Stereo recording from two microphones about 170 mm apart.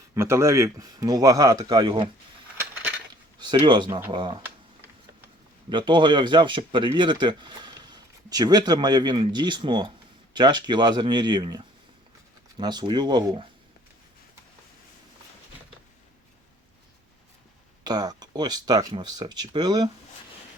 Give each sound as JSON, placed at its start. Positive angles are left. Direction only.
{"t": 0.1, "sound": "speech", "side_deg": -15}
{"t": 3.1, "sound": "a sound", "side_deg": -25}
{"t": 4.1, "sound": "speech", "side_deg": -25}
{"t": 5.6, "sound": "speech", "side_deg": -30}
{"t": 17.8, "sound": "speech", "side_deg": -25}